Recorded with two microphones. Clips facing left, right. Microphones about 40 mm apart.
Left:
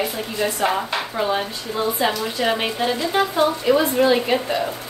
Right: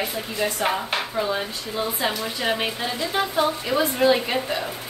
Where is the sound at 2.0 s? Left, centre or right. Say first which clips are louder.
Left 3 dB; centre.